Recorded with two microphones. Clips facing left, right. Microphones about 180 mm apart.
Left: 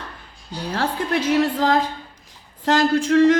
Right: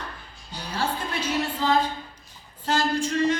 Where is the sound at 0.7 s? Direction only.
90° left.